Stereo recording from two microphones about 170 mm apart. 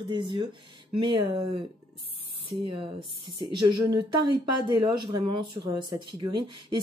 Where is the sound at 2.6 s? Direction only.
30° right (ahead or behind).